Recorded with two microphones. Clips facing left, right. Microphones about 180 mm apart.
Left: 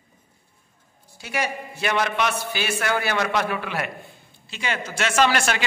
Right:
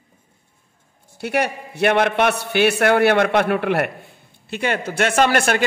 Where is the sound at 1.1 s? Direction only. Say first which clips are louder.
Right 6 dB; 60° right (ahead or behind).